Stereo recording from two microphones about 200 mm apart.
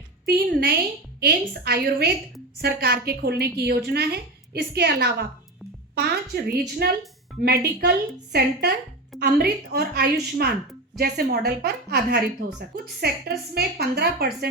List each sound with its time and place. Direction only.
0.3 s a woman's voice: 50° right (ahead or behind)